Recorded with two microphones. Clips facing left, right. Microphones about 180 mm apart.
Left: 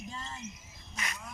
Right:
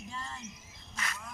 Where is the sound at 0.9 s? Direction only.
15° left (ahead or behind).